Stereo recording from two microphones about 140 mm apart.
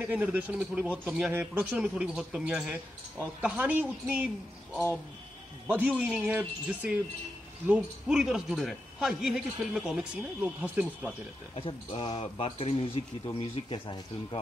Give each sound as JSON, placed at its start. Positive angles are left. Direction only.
{"t": 0.0, "sound": "speech", "side_deg": -10}
{"t": 5.7, "sound": "speech", "side_deg": -10}
{"t": 11.5, "sound": "speech", "side_deg": 40}